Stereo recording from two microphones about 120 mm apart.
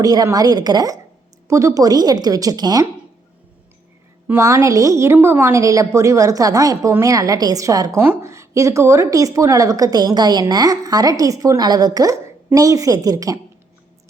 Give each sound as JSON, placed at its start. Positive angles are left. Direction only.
{"t": 0.0, "sound": "a woman's voice", "side_deg": -30}
{"t": 4.3, "sound": "a woman's voice", "side_deg": -25}